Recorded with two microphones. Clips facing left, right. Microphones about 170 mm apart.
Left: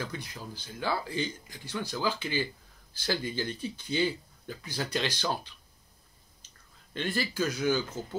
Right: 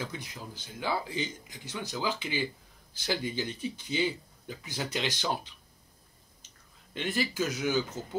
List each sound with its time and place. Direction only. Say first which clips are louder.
0.0 s speech: left 1 dB; 20° right (ahead or behind)
6.9 s speech: even; 15° right (ahead or behind)